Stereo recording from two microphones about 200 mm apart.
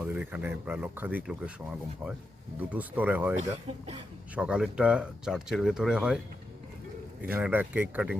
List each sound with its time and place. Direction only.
0.0 s speech: 10° right (ahead or behind)
2.6 s speech: 10° right (ahead or behind)
3.7 s speech: 25° right (ahead or behind)
4.4 s speech: 5° right (ahead or behind)
7.3 s speech: 10° right (ahead or behind)